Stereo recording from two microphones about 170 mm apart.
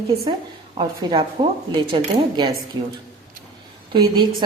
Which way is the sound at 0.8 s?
35° right (ahead or behind).